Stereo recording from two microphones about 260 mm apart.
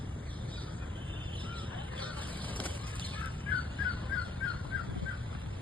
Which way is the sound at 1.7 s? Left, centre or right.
Centre.